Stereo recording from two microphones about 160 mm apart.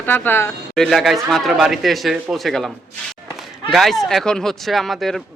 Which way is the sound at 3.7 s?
Centre (ahead or behind).